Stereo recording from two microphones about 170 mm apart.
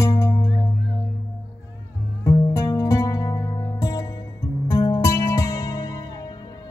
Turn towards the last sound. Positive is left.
turn(degrees=20)  # may be behind; listen again after turning